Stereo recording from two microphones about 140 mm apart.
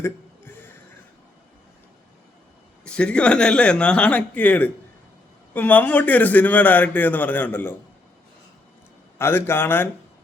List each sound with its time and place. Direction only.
0.0 s a sound: 15° left (ahead or behind)
2.8 s a man's voice: 5° left (ahead or behind)
9.1 s a man's voice: 15° left (ahead or behind)